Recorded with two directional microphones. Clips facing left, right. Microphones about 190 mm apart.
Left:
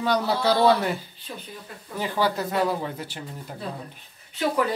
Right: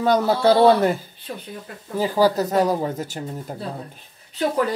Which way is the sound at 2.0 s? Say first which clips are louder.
Right 7 dB; 40° right (ahead or behind).